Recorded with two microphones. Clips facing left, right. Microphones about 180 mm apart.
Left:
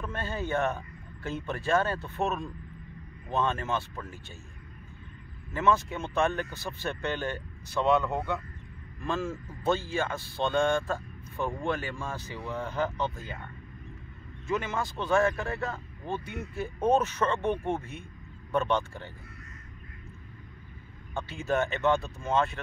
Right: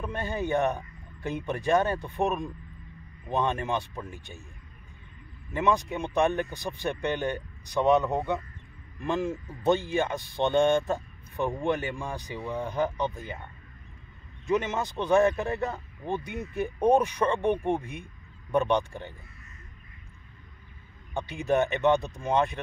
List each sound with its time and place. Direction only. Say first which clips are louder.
0.0 s speech: right 3 dB; 15° right (ahead or behind)
5.5 s speech: even; 15° right (ahead or behind)
14.5 s speech: right 4 dB; 20° right (ahead or behind)
21.1 s speech: right 3 dB; 15° right (ahead or behind)